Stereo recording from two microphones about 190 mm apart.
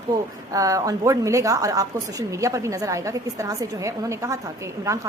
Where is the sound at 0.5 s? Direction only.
15° right (ahead or behind).